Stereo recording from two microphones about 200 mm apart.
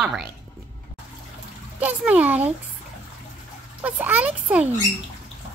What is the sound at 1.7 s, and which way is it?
Speech, 5° right (ahead or behind).